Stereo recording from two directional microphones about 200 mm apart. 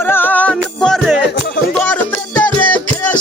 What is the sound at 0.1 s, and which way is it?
Music, 10° left (ahead or behind).